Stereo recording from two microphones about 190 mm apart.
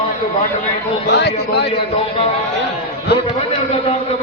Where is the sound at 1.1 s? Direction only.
65° left (ahead or behind).